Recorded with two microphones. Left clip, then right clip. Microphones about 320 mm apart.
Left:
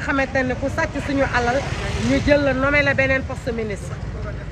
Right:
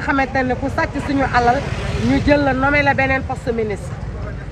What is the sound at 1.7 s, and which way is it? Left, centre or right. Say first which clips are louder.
Vehicle: right 2 dB; left.